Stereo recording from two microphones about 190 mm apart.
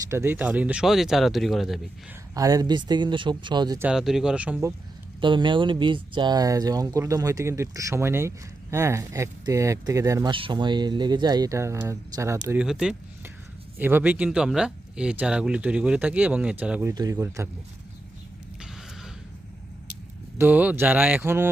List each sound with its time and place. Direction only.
0.1 s speech: 15° right (ahead or behind)
2.3 s speech: 20° right (ahead or behind)
3.8 s speech: centre (ahead or behind)
5.2 s speech: 25° right (ahead or behind)
12.6 s speech: 5° right (ahead or behind)
16.9 s speech: 20° right (ahead or behind)
20.4 s speech: 10° right (ahead or behind)